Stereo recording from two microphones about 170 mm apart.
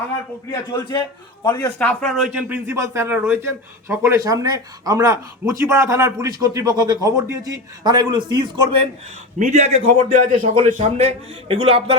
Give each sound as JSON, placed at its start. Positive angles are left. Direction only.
{"t": 0.7, "sound": "a man's voice", "side_deg": 20}
{"t": 9.4, "sound": "a man's voice", "side_deg": -45}